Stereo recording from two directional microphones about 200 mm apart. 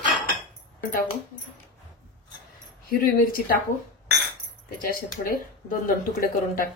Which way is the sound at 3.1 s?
45° left (ahead or behind).